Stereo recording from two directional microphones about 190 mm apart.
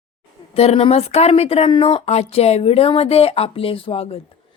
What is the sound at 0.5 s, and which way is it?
Speech, 30° left (ahead or behind).